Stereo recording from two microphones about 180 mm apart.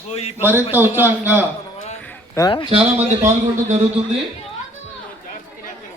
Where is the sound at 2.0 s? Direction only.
10° left (ahead or behind).